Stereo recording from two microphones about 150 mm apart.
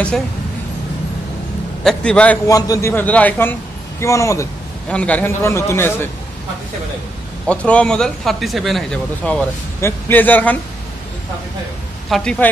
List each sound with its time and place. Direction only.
1.9 s a man's voice: 5° left (ahead or behind)
2.4 s a man's voice: 20° left (ahead or behind)
4.8 s a man's voice: 10° left (ahead or behind)
7.4 s a man's voice: 10° left (ahead or behind)
12.1 s speech: 5° left (ahead or behind)